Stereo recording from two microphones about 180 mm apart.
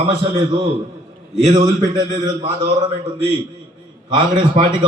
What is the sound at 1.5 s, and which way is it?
A man's voice, 25° right (ahead or behind).